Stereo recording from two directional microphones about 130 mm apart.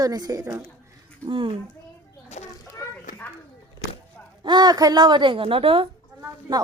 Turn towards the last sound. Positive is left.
turn(degrees=-25)  # may be behind; listen again after turning